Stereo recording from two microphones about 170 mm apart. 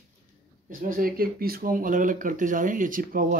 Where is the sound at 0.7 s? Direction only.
55° right (ahead or behind).